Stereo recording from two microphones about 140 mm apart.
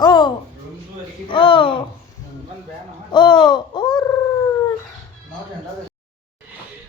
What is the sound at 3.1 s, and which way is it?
Speech, 30° left (ahead or behind).